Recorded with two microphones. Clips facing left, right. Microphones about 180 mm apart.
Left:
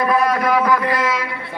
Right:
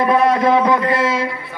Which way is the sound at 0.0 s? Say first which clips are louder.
Right 3 dB; 25° right (ahead or behind).